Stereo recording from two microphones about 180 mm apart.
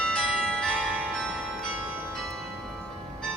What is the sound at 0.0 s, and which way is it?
Music, 5° left (ahead or behind).